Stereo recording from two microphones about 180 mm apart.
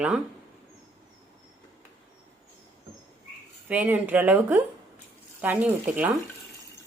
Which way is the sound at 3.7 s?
10° right (ahead or behind).